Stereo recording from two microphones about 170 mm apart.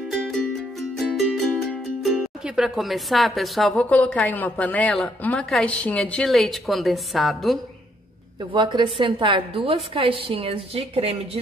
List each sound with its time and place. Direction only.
0.1 s music: centre (ahead or behind)
8.4 s a woman's voice: 25° right (ahead or behind)